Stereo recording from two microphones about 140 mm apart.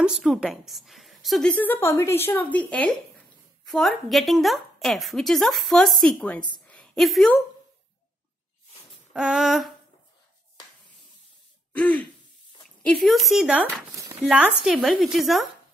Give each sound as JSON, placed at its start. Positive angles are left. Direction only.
{"t": 0.0, "sound": "a woman's voice", "side_deg": -5}
{"t": 1.6, "sound": "a woman's voice", "side_deg": 15}
{"t": 6.7, "sound": "a sound", "side_deg": 10}
{"t": 9.1, "sound": "a woman's voice", "side_deg": -5}
{"t": 11.7, "sound": "throat clearing", "side_deg": 10}
{"t": 12.6, "sound": "speech", "side_deg": 5}
{"t": 13.9, "sound": "a sound", "side_deg": -25}
{"t": 14.3, "sound": "a woman's voice", "side_deg": -10}